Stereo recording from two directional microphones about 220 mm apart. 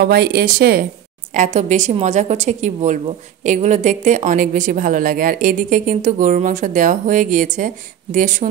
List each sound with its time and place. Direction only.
0.0 s a woman's voice: 45° right (ahead or behind)